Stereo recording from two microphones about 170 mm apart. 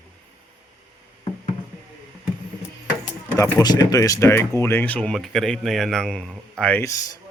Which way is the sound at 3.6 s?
25° left (ahead or behind).